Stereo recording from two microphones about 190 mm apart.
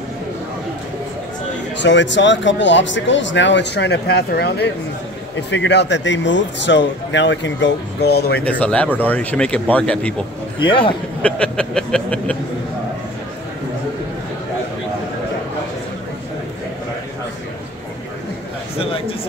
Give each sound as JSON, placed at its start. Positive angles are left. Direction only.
{"t": 1.8, "sound": "speech", "side_deg": 70}
{"t": 8.5, "sound": "speech", "side_deg": 5}
{"t": 10.6, "sound": "a man's voice", "side_deg": 25}
{"t": 11.2, "sound": "a sound", "side_deg": 5}